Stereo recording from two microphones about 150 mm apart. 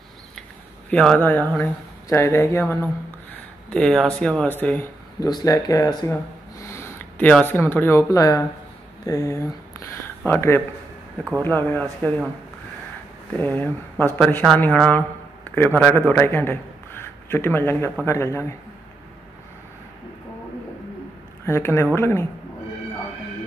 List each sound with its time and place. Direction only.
0.8 s a woman's voice: 10° left (ahead or behind)
3.3 s speech: 5° left (ahead or behind)
5.2 s a woman's voice: 25° left (ahead or behind)
13.4 s a woman's voice: 10° left (ahead or behind)
21.5 s a woman's voice: 15° left (ahead or behind)